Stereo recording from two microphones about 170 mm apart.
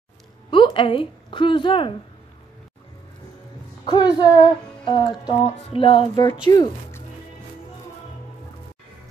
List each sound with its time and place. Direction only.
0.5 s a woman's voice: 30° left (ahead or behind)
3.8 s speech: 25° left (ahead or behind)